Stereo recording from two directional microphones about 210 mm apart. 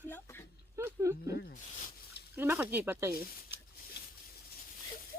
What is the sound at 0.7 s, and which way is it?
Speech, 10° right (ahead or behind).